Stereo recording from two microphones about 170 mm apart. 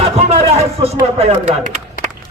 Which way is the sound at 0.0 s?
35° right (ahead or behind).